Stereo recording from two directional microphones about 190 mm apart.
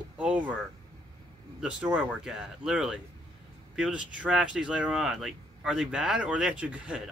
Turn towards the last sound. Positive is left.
turn(degrees=-5)  # may be behind; listen again after turning